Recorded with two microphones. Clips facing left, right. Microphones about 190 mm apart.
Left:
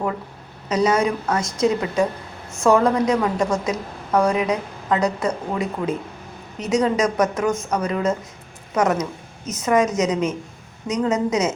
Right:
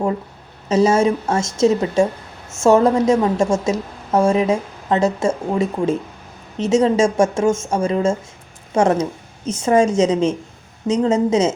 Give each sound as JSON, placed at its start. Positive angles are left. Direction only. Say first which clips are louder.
{"t": 0.7, "sound": "a woman's voice", "louder": "right 4 dB", "side_deg": -25}